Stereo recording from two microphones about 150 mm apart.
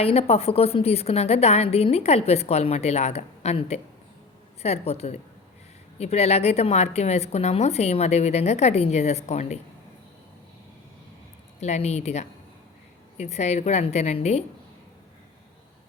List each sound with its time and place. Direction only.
0.0 s a woman's voice: 45° left (ahead or behind)
11.6 s a woman's voice: 45° left (ahead or behind)